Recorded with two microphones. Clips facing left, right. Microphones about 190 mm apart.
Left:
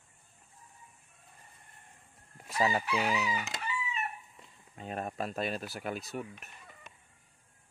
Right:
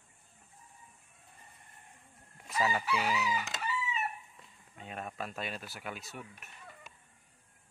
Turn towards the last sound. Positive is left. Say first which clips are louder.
# left 6 dB
turn(degrees=40)  # may be behind; listen again after turning